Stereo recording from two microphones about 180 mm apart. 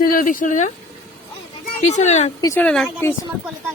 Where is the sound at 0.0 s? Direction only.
50° left (ahead or behind).